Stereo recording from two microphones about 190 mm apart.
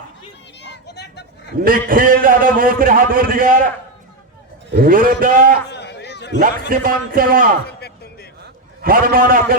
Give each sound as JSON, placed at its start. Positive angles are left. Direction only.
{"t": 0.6, "sound": "vehicle", "side_deg": 65}
{"t": 1.5, "sound": "a man's voice", "side_deg": -50}
{"t": 4.7, "sound": "a man's voice", "side_deg": -50}
{"t": 5.7, "sound": "a sound", "side_deg": 60}
{"t": 6.7, "sound": "a man's voice", "side_deg": -50}
{"t": 7.7, "sound": "music", "side_deg": 55}
{"t": 8.8, "sound": "a man's voice", "side_deg": -50}